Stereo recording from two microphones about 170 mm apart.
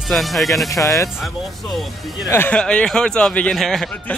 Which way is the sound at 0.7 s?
20° left (ahead or behind).